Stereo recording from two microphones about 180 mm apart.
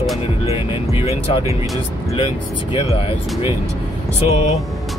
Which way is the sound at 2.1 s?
30° left (ahead or behind).